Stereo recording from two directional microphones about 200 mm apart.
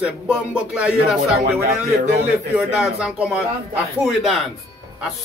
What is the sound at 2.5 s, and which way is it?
Speech, 5° right (ahead or behind).